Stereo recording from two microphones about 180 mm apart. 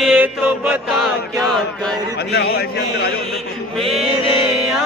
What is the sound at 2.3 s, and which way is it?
Speech, 60° left (ahead or behind).